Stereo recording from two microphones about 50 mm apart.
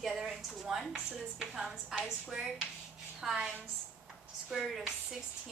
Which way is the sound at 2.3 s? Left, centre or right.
Centre.